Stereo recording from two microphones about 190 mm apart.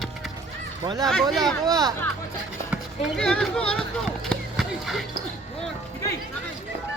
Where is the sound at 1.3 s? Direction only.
Centre (ahead or behind).